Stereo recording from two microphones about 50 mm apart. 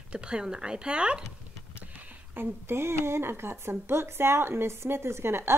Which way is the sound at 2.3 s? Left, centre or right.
Right.